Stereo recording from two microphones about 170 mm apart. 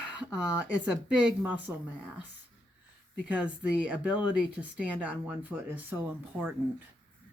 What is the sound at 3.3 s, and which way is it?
Speech, 5° right (ahead or behind).